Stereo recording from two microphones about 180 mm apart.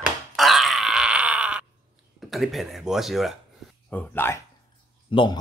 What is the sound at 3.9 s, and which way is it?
Speech, 10° left (ahead or behind).